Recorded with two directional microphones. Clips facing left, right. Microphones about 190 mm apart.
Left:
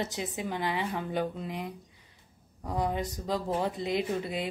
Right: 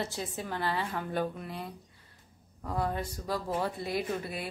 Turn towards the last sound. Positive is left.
turn(degrees=20)  # may be behind; listen again after turning